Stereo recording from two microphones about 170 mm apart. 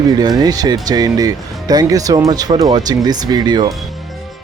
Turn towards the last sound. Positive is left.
turn(degrees=-25)  # may be behind; listen again after turning